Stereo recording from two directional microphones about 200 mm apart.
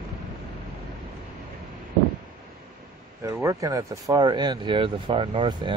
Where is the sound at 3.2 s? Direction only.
15° right (ahead or behind).